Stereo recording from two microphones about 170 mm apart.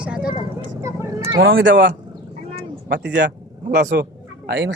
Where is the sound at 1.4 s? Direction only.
85° right.